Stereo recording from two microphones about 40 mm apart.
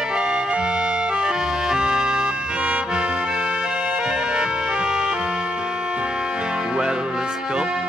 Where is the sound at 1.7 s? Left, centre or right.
Centre.